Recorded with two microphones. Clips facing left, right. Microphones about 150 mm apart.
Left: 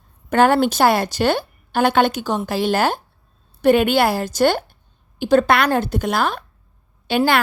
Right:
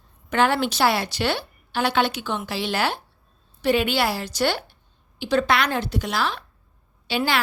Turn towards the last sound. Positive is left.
turn(degrees=55)  # may be behind; listen again after turning